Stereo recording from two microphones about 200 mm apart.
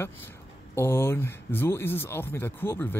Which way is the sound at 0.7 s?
10° left (ahead or behind).